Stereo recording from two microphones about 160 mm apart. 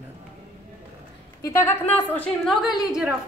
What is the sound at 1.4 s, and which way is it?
A woman's voice, 15° left (ahead or behind).